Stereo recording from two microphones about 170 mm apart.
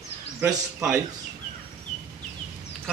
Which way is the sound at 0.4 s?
15° right (ahead or behind).